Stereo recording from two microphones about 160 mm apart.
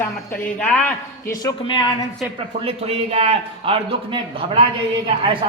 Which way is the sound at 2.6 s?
40° right (ahead or behind).